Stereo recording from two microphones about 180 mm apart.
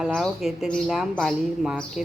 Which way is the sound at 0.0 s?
Centre (ahead or behind).